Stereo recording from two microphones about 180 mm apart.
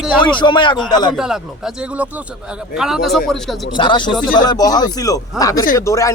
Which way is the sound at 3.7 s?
25° left (ahead or behind).